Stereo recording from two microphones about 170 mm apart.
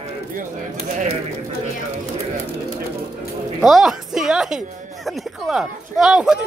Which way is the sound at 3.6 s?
Centre (ahead or behind).